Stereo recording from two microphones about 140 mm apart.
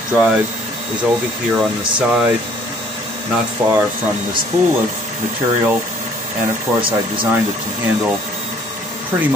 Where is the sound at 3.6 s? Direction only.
20° right (ahead or behind).